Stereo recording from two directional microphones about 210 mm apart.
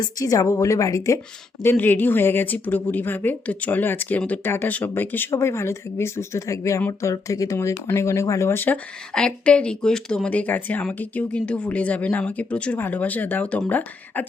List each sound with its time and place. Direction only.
0.0 s speech: 15° left (ahead or behind)